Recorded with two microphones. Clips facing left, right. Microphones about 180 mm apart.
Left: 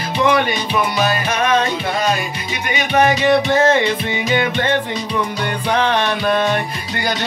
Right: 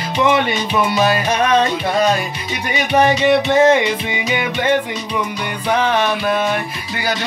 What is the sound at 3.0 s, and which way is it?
Music, 30° right (ahead or behind).